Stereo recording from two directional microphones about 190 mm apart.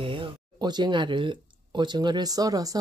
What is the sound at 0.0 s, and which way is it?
Speech, 25° right (ahead or behind).